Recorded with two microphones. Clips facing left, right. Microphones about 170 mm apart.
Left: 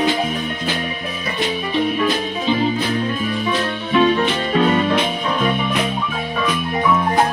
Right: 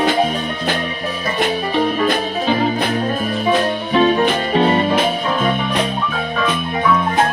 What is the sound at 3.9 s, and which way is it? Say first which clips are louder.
Music: right 1 dB; 35° right (ahead or behind).